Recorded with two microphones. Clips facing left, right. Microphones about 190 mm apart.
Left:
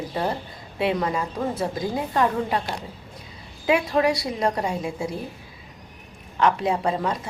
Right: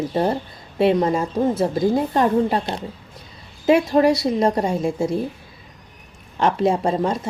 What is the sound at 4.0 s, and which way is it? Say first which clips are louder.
A woman's voice: right 6 dB; 35° right (ahead or behind).